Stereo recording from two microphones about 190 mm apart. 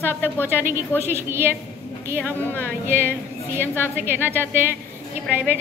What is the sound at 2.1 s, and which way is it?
Speech, 10° left (ahead or behind).